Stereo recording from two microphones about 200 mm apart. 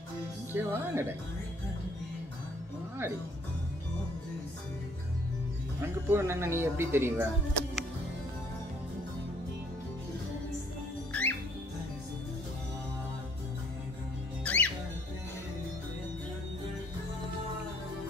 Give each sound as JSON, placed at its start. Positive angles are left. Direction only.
{"t": 0.5, "sound": "speech", "side_deg": -10}
{"t": 5.8, "sound": "speech", "side_deg": -10}
{"t": 11.1, "sound": "music", "side_deg": 5}
{"t": 14.4, "sound": "music", "side_deg": 5}